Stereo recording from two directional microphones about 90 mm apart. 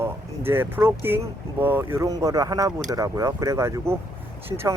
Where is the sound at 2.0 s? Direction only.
40° right (ahead or behind).